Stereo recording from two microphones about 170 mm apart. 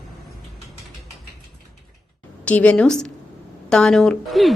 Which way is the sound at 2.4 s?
10° left (ahead or behind).